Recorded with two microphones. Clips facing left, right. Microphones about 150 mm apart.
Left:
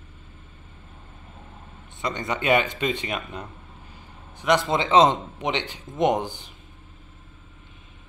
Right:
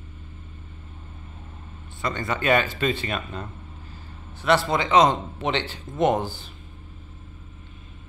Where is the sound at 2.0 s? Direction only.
20° left (ahead or behind).